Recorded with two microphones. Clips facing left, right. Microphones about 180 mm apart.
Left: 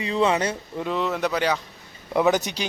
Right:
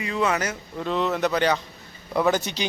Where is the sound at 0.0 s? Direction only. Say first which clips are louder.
Left 3 dB; 30° left (ahead or behind).